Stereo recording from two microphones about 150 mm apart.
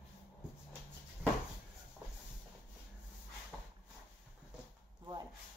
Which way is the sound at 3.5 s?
Centre (ahead or behind).